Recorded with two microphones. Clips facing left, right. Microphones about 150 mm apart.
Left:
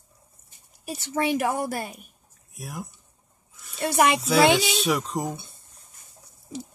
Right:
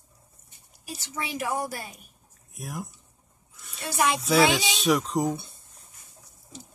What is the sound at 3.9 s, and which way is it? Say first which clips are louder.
Speech: left 4 dB; 65° left (ahead or behind).